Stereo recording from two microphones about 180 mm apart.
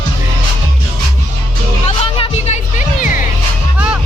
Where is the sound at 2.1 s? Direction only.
40° left (ahead or behind).